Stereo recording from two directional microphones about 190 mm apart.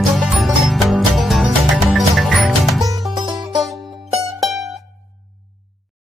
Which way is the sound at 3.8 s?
Centre (ahead or behind).